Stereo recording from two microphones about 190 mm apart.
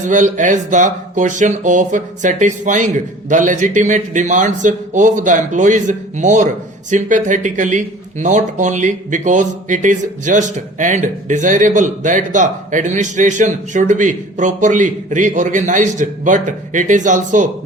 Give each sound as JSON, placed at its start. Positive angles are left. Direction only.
{"t": 0.0, "sound": "speech", "side_deg": -40}